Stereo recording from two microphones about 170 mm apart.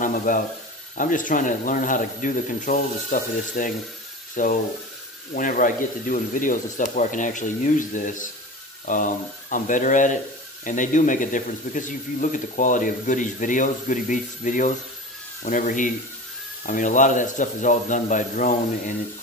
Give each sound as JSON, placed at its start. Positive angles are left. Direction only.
{"t": 0.0, "sound": "a man's voice", "side_deg": 55}